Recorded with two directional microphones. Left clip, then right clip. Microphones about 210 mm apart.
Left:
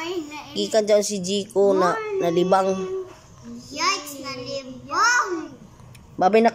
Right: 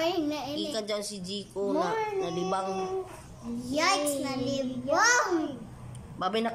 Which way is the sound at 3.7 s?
25° right (ahead or behind).